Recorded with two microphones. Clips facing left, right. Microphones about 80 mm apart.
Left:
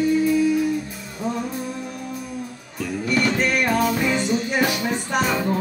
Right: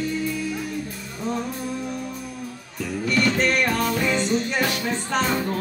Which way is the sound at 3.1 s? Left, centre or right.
Centre.